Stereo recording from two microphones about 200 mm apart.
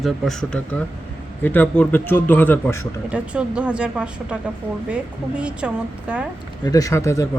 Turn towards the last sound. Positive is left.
turn(degrees=15)  # may be behind; listen again after turning